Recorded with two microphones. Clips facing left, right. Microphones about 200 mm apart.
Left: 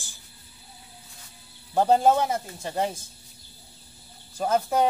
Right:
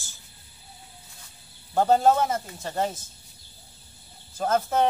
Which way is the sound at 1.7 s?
15° left (ahead or behind).